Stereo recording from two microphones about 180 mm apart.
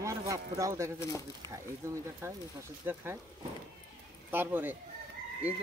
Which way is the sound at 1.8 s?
15° right (ahead or behind).